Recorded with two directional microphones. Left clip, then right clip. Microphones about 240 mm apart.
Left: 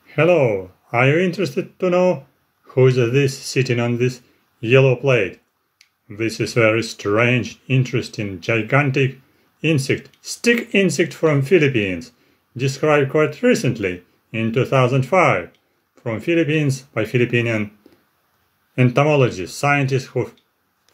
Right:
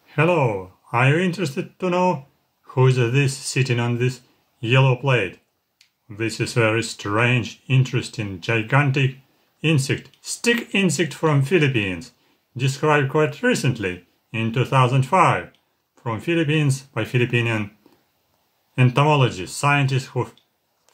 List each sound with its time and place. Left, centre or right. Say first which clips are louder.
0.1 s speech: left 4 dB; centre
18.8 s speech: left 3 dB; centre